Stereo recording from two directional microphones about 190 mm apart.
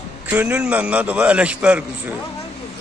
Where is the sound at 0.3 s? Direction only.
5° right (ahead or behind).